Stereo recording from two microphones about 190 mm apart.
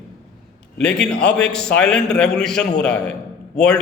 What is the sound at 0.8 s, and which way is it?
A man's voice, 5° left (ahead or behind).